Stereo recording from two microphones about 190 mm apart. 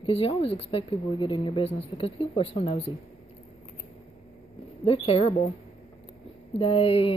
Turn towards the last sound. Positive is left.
turn(degrees=30)  # may be behind; listen again after turning